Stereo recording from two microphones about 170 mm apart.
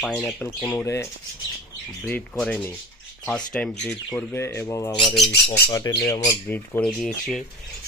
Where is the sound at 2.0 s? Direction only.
5° left (ahead or behind).